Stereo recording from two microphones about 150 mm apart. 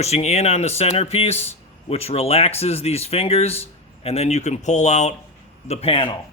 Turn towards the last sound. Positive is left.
turn(degrees=40)  # may be behind; listen again after turning